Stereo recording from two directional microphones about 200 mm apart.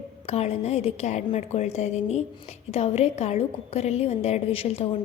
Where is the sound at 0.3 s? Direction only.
30° left (ahead or behind).